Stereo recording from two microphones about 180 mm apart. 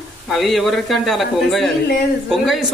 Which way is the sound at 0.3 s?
Centre (ahead or behind).